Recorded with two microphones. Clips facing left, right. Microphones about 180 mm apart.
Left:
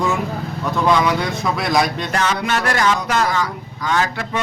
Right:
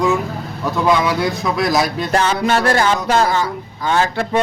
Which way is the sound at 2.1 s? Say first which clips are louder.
Right 4 dB; 30° right (ahead or behind).